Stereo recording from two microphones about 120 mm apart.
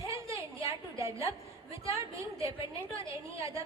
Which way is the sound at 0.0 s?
25° right (ahead or behind).